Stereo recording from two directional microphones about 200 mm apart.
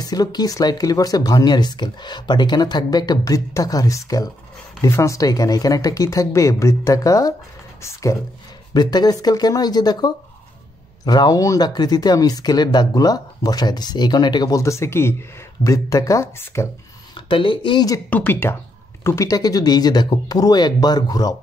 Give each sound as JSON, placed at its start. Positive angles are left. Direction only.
{"t": 0.0, "sound": "speech", "side_deg": 20}
{"t": 17.1, "sound": "speech", "side_deg": 25}